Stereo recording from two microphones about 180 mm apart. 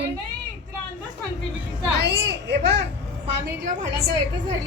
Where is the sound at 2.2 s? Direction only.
70° right (ahead or behind).